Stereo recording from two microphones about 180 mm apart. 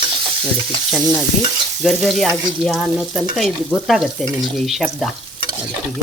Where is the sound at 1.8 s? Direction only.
Centre (ahead or behind).